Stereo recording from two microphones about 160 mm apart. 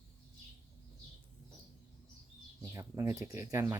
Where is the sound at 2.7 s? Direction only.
20° right (ahead or behind).